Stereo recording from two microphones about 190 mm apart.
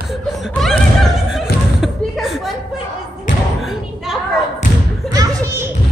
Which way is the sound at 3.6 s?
Centre (ahead or behind).